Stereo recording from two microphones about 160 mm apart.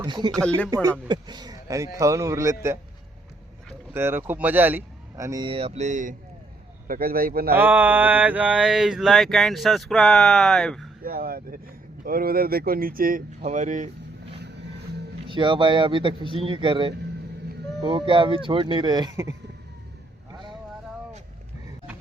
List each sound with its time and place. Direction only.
0.0 s speech: 25° right (ahead or behind)
0.4 s speech: 10° left (ahead or behind)
0.7 s speech: 25° right (ahead or behind)
3.9 s speech: 15° right (ahead or behind); by 6.1 s 50° right (ahead or behind)
6.8 s a man's voice: 65° right (ahead or behind)
7.5 s mantra: 10° right (ahead or behind)
11.0 s a man's voice: 70° right (ahead or behind); by 14.3 s 50° right (ahead or behind)
15.3 s speech: 30° right (ahead or behind)